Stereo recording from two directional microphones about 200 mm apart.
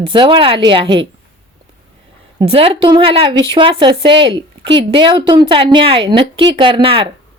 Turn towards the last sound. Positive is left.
turn(degrees=-25)  # may be behind; listen again after turning